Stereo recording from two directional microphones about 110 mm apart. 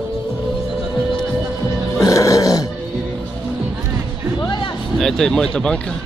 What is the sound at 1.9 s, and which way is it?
Music, 30° left (ahead or behind).